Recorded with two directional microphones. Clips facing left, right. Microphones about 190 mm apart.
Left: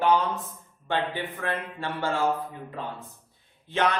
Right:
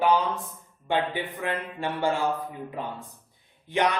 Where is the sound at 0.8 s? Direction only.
15° right (ahead or behind).